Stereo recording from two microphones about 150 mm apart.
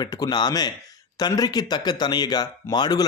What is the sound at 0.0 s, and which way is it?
A man's voice, 25° left (ahead or behind).